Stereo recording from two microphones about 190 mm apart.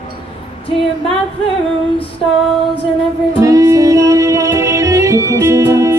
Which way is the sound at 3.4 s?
15° right (ahead or behind).